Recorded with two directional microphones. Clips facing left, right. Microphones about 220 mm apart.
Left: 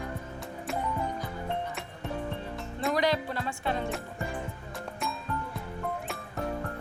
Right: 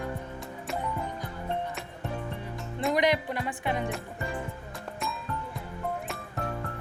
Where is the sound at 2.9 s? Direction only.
20° right (ahead or behind).